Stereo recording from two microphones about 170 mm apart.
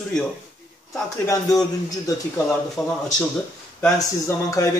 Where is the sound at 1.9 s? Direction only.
20° left (ahead or behind).